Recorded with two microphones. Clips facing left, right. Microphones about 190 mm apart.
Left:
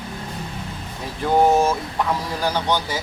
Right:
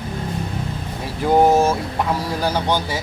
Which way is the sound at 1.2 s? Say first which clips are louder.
Right 2 dB; 10° right (ahead or behind).